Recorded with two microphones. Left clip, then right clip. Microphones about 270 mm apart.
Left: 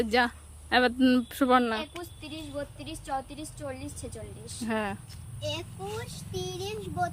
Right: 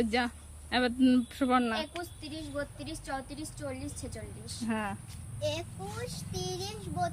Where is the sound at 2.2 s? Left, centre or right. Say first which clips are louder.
Left 2 dB; centre.